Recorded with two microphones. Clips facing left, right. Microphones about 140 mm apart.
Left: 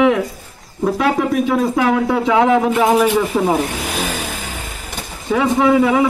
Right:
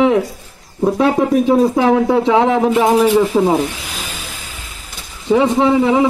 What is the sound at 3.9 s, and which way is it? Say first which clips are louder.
Vehicle: left 7 dB; 65° left (ahead or behind).